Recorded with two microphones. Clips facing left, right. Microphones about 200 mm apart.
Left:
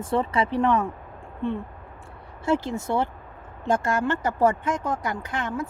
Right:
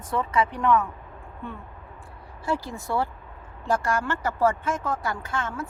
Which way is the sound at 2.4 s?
20° left (ahead or behind).